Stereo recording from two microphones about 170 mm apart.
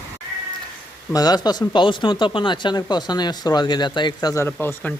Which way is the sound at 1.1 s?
25° left (ahead or behind).